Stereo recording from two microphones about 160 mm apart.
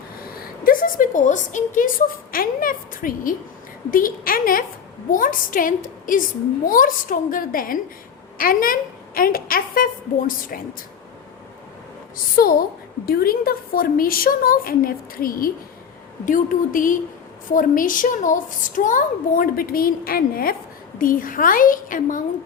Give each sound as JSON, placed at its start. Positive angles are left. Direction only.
{"t": 0.3, "sound": "a child's voice", "side_deg": 60}
{"t": 12.1, "sound": "a child's voice", "side_deg": 65}